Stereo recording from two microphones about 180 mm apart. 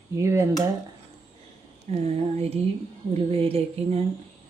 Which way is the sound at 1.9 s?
35° right (ahead or behind).